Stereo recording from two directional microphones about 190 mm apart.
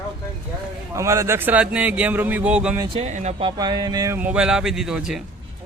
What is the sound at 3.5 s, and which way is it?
Speech, 20° right (ahead or behind).